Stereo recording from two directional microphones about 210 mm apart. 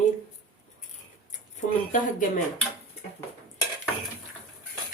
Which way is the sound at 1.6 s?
40° left (ahead or behind).